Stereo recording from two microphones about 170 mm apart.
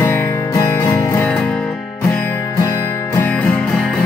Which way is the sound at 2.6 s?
20° left (ahead or behind).